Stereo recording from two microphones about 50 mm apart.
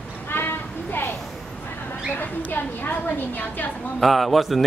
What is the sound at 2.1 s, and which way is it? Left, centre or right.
A woman's voice, left.